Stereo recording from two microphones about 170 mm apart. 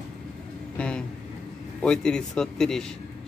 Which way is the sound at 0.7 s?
5° left (ahead or behind).